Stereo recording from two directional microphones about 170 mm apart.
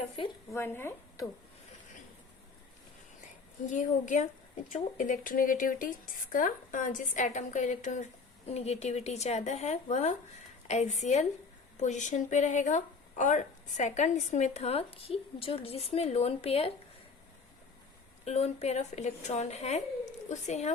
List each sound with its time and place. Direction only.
0.5 s speech: 15° left (ahead or behind)
3.7 s a woman's voice: 50° left (ahead or behind)
18.3 s speech: 40° left (ahead or behind)